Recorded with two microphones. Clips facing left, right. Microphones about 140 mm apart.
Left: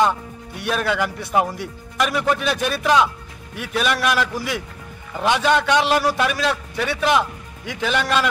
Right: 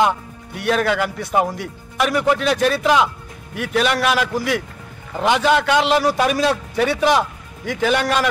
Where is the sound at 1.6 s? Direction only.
10° right (ahead or behind).